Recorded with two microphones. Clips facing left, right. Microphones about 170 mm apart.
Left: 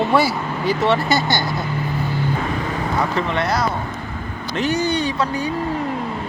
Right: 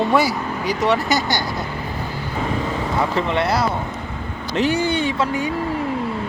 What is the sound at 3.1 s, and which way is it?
Speech, 30° right (ahead or behind).